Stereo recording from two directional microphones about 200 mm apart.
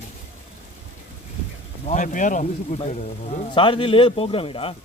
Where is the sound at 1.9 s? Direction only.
40° left (ahead or behind).